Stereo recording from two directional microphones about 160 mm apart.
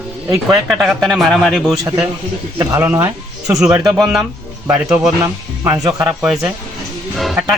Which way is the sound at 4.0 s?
Centre (ahead or behind).